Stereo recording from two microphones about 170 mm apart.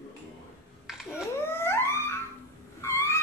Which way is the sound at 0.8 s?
5° right (ahead or behind).